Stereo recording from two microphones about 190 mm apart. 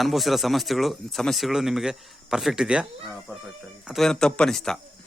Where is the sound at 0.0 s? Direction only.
Centre (ahead or behind).